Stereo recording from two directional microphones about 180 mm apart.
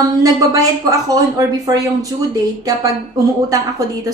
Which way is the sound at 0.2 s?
20° right (ahead or behind).